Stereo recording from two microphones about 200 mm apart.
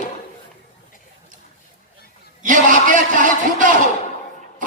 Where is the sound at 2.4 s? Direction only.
40° right (ahead or behind).